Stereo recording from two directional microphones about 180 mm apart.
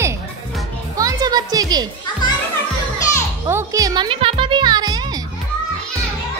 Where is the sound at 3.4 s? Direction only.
15° right (ahead or behind).